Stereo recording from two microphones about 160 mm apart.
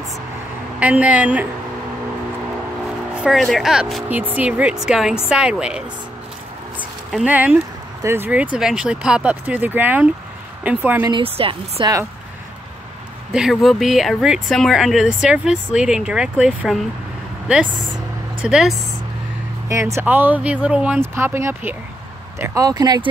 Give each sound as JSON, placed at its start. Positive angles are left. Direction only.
{"t": 0.7, "sound": "speech", "side_deg": -10}
{"t": 3.2, "sound": "speech", "side_deg": 0}
{"t": 6.8, "sound": "a sound", "side_deg": -5}
{"t": 7.3, "sound": "speech", "side_deg": -10}
{"t": 11.1, "sound": "a woman's voice", "side_deg": -35}
{"t": 13.3, "sound": "speech", "side_deg": -5}
{"t": 18.4, "sound": "speech", "side_deg": -5}
{"t": 19.7, "sound": "speech", "side_deg": -15}